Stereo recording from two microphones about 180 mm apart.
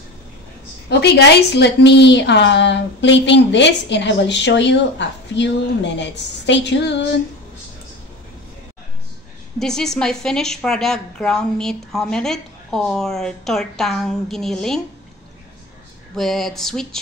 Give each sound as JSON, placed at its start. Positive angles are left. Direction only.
{"t": 0.8, "sound": "a woman's voice", "side_deg": 65}
{"t": 9.6, "sound": "a woman's voice", "side_deg": 5}
{"t": 16.2, "sound": "a woman's voice", "side_deg": 0}